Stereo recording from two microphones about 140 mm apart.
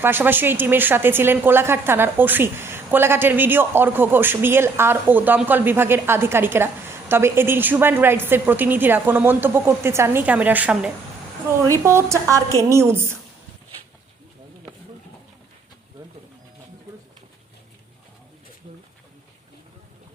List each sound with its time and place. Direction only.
0.0 s a woman's voice: 15° right (ahead or behind)
11.7 s a woman's voice: 20° right (ahead or behind)